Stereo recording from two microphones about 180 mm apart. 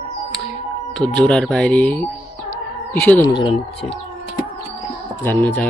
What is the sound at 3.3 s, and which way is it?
Speech, 25° left (ahead or behind).